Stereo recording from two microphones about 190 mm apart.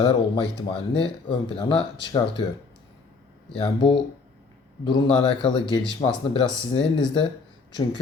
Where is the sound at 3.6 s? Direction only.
30° left (ahead or behind).